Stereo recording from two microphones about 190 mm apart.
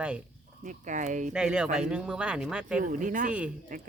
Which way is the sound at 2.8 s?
45° right (ahead or behind).